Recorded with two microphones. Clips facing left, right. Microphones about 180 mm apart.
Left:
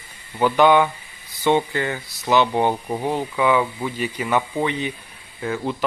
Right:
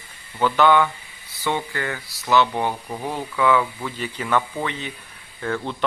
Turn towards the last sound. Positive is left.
turn(degrees=5)  # may be behind; listen again after turning